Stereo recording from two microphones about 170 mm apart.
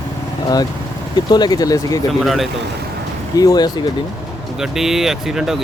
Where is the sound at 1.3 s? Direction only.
25° left (ahead or behind).